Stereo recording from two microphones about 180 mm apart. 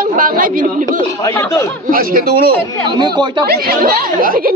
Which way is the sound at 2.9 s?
25° right (ahead or behind).